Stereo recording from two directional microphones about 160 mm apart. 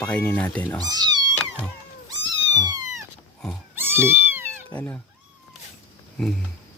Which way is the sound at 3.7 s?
15° right (ahead or behind).